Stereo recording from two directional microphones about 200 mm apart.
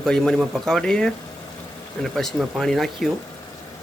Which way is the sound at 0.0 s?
Centre (ahead or behind).